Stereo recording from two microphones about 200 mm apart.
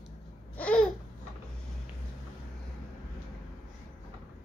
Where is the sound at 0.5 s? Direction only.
5° left (ahead or behind).